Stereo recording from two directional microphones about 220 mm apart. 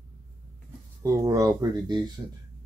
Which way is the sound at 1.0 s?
15° right (ahead or behind).